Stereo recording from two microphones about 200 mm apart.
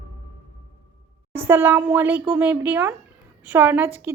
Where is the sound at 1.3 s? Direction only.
10° right (ahead or behind).